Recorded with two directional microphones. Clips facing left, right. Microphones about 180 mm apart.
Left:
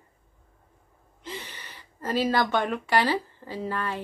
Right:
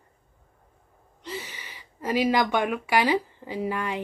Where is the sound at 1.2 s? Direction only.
5° right (ahead or behind).